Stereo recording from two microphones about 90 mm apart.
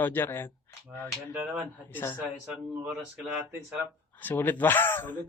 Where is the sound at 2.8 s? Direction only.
10° right (ahead or behind).